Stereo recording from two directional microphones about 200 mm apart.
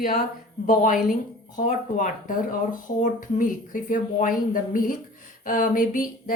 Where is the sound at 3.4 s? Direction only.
40° left (ahead or behind).